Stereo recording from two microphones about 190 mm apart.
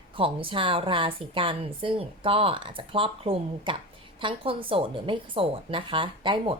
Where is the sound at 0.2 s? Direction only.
25° right (ahead or behind).